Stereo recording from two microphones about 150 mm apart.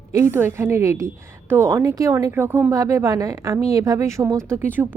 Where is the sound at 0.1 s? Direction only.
15° right (ahead or behind).